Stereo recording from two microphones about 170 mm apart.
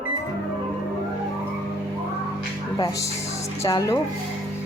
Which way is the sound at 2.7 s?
20° left (ahead or behind).